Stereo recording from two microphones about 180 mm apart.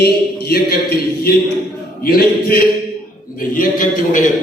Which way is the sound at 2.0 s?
55° left (ahead or behind).